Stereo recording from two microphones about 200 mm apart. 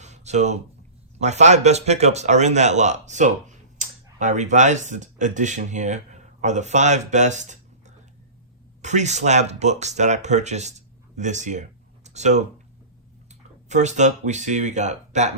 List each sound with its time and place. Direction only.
0.0 s a sound: 35° right (ahead or behind)
1.2 s speech: 35° right (ahead or behind)
13.7 s speech: 35° right (ahead or behind)